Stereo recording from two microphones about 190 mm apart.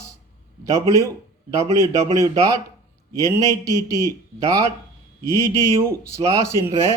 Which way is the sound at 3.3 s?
15° right (ahead or behind).